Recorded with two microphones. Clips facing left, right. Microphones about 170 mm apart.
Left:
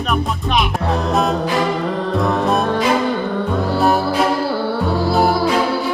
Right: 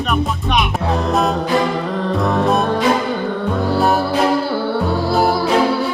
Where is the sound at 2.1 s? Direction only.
Centre (ahead or behind).